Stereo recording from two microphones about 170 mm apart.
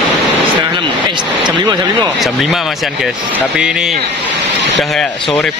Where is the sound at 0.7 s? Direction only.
25° right (ahead or behind).